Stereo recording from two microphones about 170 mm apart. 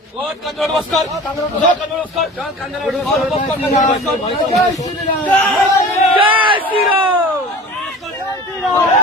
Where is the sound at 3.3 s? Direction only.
45° left (ahead or behind).